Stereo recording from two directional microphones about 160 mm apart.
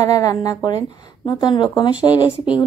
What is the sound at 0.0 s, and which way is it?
Speech, 25° left (ahead or behind).